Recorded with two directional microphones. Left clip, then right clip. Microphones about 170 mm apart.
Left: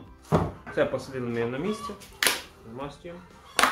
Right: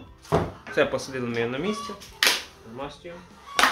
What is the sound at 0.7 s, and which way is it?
Speech, 40° right (ahead or behind).